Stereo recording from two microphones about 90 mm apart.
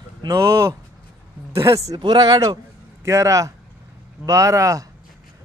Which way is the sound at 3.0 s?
35° right (ahead or behind).